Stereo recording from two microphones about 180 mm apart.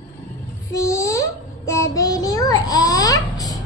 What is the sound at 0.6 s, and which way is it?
Child singing, 15° left (ahead or behind).